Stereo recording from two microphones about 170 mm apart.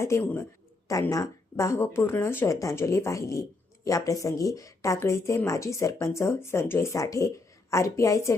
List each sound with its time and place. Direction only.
0.0 s speech: 15° left (ahead or behind)